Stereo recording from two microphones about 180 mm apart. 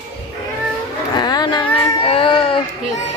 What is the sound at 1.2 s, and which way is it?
Speech, 20° left (ahead or behind).